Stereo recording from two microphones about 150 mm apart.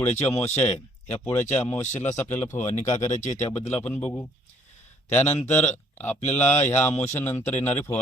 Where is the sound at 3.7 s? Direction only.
10° left (ahead or behind).